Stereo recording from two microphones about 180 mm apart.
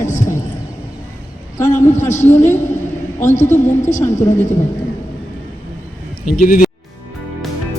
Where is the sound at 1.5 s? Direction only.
15° left (ahead or behind).